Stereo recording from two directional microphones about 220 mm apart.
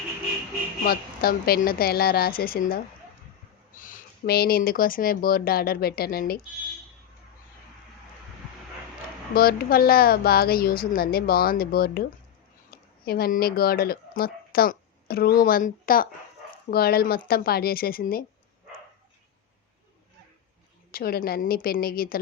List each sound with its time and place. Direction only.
0.9 s a woman's voice: 45° left (ahead or behind)
9.3 s a woman's voice: 45° left (ahead or behind)
20.9 s a woman's voice: 45° left (ahead or behind)